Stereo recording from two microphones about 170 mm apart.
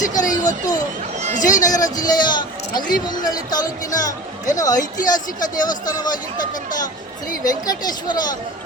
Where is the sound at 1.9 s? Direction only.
25° left (ahead or behind).